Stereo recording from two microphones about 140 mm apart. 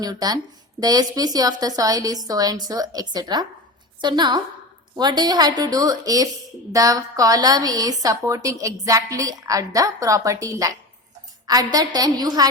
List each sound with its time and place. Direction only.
0.0 s a woman's voice: 25° right (ahead or behind)